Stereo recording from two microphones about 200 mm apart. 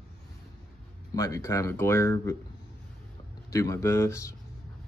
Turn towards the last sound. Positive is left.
turn(degrees=15)  # may be behind; listen again after turning